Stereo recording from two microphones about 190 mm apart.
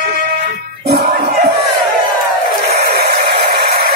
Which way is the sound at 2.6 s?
60° right (ahead or behind).